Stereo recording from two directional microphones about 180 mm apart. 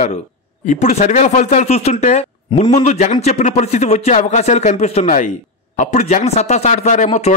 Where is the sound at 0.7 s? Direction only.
40° left (ahead or behind).